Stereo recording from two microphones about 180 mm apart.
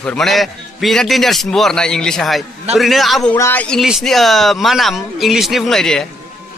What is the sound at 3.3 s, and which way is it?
Speech, 10° left (ahead or behind).